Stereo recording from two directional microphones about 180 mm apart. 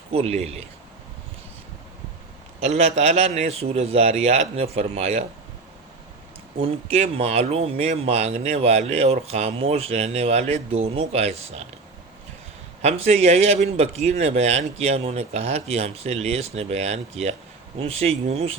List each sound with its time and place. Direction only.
0.1 s speech: 35° right (ahead or behind)
2.6 s speech: 40° right (ahead or behind)
6.6 s speech: 35° right (ahead or behind)
12.8 s speech: 35° right (ahead or behind)